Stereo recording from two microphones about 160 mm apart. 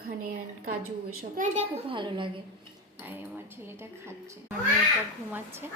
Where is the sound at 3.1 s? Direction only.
15° right (ahead or behind).